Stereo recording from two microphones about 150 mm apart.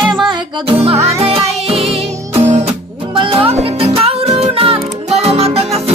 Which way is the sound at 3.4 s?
40° right (ahead or behind).